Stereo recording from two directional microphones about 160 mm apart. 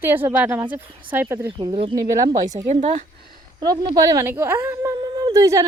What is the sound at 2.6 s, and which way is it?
Speech, 45° right (ahead or behind).